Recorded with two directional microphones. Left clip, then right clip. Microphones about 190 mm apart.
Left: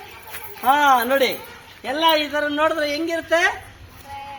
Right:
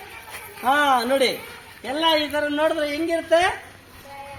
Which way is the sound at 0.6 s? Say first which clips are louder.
Left 3 dB; 25° right (ahead or behind).